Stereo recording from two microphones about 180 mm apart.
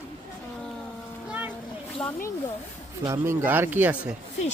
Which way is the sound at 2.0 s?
10° left (ahead or behind).